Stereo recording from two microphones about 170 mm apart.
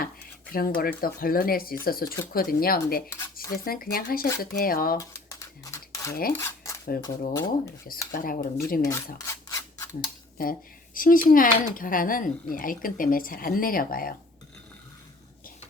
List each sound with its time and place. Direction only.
0.5 s speech: 60° left (ahead or behind)
4.9 s a sound: 20° left (ahead or behind)
6.3 s cutlery: 15° left (ahead or behind)
7.3 s speech: 20° left (ahead or behind)
8.1 s speech: 60° left (ahead or behind)
8.8 s rub: 15° left (ahead or behind)
9.1 s scissors: 20° left (ahead or behind)
10.4 s speech: 60° left (ahead or behind)